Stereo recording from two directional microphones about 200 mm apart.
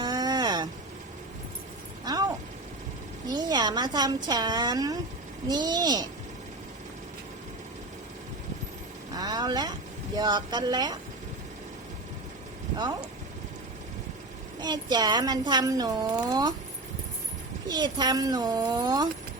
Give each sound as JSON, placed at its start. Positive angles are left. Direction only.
{"t": 0.0, "sound": "a sound", "side_deg": -20}
{"t": 2.0, "sound": "a sound", "side_deg": -20}
{"t": 3.2, "sound": "a woman's voice", "side_deg": -20}
{"t": 9.1, "sound": "speech", "side_deg": -20}
{"t": 12.7, "sound": "speech", "side_deg": -20}
{"t": 14.6, "sound": "speech", "side_deg": -20}
{"t": 17.7, "sound": "speech", "side_deg": -20}